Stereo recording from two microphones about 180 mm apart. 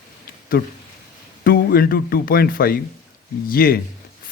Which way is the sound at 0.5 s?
60° left (ahead or behind).